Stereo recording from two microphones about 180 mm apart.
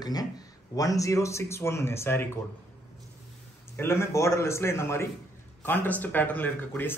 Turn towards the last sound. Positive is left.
turn(degrees=10)  # may be behind; listen again after turning